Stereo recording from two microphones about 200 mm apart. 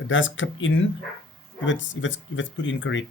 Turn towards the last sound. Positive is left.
turn(degrees=70)  # may be behind; listen again after turning